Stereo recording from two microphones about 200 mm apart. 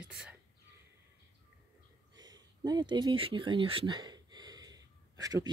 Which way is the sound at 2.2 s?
20° right (ahead or behind).